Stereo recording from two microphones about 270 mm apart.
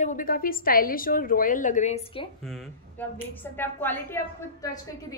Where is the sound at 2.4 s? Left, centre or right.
Centre.